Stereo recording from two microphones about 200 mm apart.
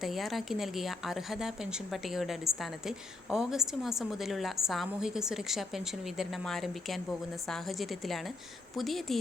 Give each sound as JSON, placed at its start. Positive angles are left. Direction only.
{"t": 0.0, "sound": "a woman's voice", "side_deg": 0}